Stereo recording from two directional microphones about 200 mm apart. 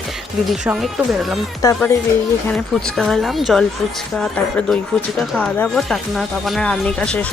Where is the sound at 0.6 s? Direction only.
5° right (ahead or behind).